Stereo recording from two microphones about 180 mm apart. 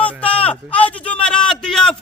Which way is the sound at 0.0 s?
5° left (ahead or behind).